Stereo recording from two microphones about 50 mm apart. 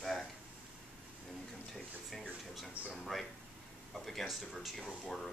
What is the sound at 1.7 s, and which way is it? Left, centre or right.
Speech, centre.